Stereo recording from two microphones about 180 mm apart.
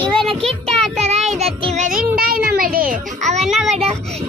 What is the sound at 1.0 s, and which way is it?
Child singing, 35° right (ahead or behind).